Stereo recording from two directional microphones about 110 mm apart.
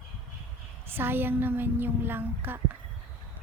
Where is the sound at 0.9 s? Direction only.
20° right (ahead or behind).